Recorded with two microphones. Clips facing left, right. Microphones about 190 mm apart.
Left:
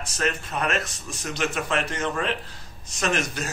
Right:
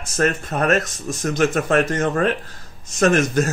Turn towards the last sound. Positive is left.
turn(degrees=-45)  # may be behind; listen again after turning